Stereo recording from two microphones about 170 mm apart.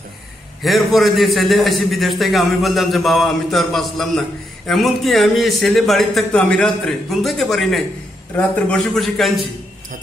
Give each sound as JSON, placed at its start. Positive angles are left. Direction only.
{"t": 0.6, "sound": "a man's voice", "side_deg": 0}